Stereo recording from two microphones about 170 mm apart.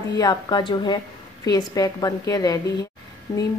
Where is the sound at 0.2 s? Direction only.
25° left (ahead or behind).